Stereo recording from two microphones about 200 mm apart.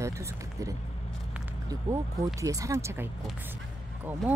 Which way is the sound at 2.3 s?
15° right (ahead or behind).